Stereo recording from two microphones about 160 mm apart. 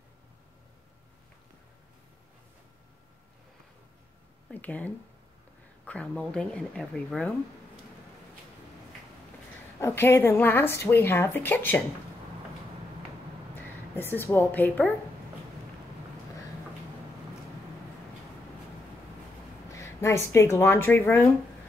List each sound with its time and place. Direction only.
4.5 s a sound: 10° left (ahead or behind)
5.9 s a woman's voice: 5° left (ahead or behind)
9.8 s a woman's voice: 15° left (ahead or behind)
13.6 s a woman's voice: 15° left (ahead or behind)
19.7 s speech: 20° left (ahead or behind)